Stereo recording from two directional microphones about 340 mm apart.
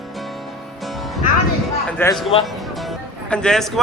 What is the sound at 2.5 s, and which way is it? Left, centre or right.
Music, centre.